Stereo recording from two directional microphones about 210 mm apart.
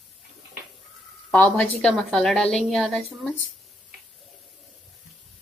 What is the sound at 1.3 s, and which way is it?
A woman's voice, 10° left (ahead or behind).